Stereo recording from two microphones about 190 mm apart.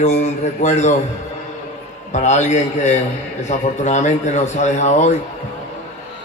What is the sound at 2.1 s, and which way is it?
A man's voice, 40° left (ahead or behind).